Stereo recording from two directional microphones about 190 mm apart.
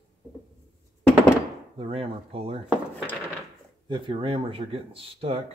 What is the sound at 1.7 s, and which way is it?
Speech, 30° right (ahead or behind).